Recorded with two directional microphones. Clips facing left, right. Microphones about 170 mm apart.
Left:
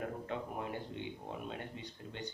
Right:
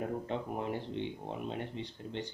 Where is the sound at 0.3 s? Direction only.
25° right (ahead or behind).